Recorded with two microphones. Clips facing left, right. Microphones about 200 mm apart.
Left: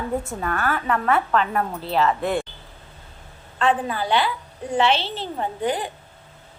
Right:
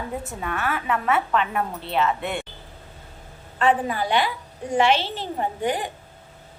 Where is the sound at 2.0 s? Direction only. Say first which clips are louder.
Left 3 dB; 35° left (ahead or behind).